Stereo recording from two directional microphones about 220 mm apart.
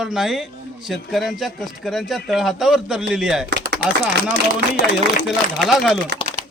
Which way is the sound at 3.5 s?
50° right (ahead or behind).